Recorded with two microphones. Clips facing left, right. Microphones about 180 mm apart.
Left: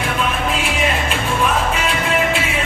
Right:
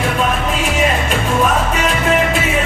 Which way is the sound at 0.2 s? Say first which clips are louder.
Right 3 dB; 40° right (ahead or behind).